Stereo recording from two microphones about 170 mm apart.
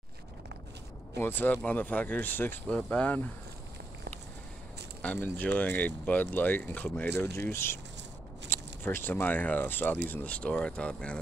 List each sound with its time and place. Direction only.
1.1 s speech: 10° left (ahead or behind)
5.0 s speech: 10° left (ahead or behind)